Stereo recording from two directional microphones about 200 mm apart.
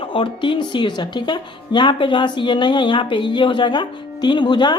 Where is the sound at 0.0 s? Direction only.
25° left (ahead or behind).